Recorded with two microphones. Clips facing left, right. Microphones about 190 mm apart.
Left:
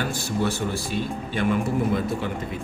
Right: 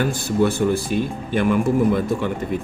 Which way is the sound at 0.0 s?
50° right (ahead or behind).